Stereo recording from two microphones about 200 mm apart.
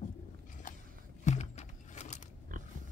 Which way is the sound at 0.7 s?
45° left (ahead or behind).